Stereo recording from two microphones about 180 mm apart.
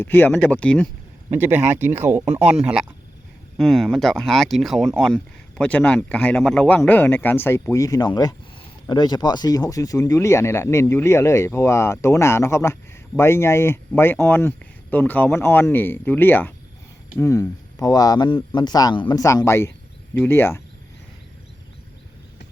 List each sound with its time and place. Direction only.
0.0 s speech: 10° left (ahead or behind)
1.3 s speech: 10° right (ahead or behind); by 20.6 s 15° left (ahead or behind)